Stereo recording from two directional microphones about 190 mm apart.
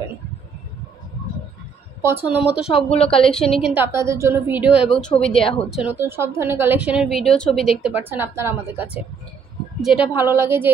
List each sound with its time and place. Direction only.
2.0 s a woman's voice: 10° right (ahead or behind)
2.7 s speech: 30° left (ahead or behind)
3.2 s a woman's voice: 5° left (ahead or behind)
3.6 s a woman's voice: 10° right (ahead or behind)